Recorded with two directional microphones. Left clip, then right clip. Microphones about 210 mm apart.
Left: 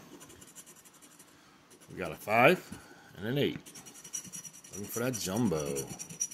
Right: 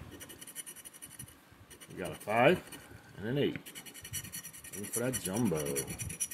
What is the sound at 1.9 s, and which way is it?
Speech, 20° left (ahead or behind).